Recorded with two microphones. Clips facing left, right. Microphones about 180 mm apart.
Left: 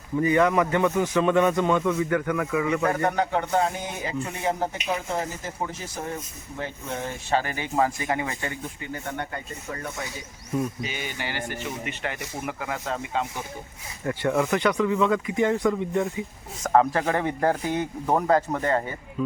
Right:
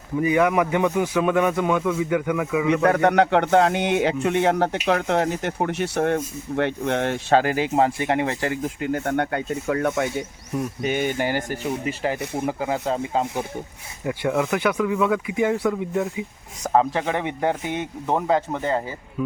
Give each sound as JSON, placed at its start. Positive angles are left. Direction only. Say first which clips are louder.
{"t": 0.2, "sound": "a man's voice", "louder": "right 1 dB", "side_deg": -10}
{"t": 2.8, "sound": "speech", "louder": "right 6 dB", "side_deg": -75}
{"t": 10.8, "sound": "speech", "louder": "right 10 dB", "side_deg": -50}
{"t": 14.0, "sound": "a man's voice", "louder": "right 1 dB", "side_deg": -10}